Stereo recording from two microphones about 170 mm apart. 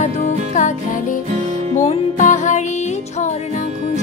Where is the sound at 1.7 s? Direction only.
45° left (ahead or behind).